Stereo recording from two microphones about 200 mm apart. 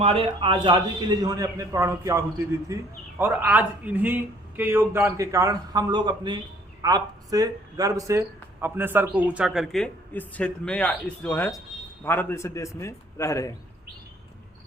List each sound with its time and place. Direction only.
0.0 s a man's voice: 30° right (ahead or behind); by 13.6 s 15° left (ahead or behind)